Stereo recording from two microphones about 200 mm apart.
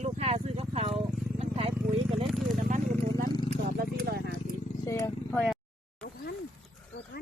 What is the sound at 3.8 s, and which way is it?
Horse, 50° right (ahead or behind).